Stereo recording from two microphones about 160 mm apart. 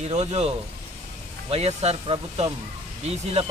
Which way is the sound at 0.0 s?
40° right (ahead or behind).